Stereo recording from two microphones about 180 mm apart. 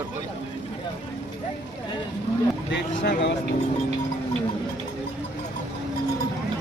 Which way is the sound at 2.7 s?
75° left (ahead or behind).